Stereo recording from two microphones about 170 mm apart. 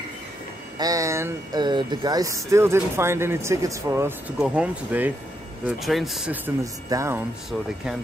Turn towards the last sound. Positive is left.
turn(degrees=-20)  # may be behind; listen again after turning